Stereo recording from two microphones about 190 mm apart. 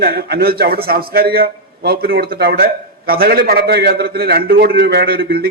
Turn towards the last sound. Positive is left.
turn(degrees=-55)  # may be behind; listen again after turning